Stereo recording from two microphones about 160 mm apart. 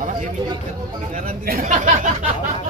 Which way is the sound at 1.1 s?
65° right (ahead or behind).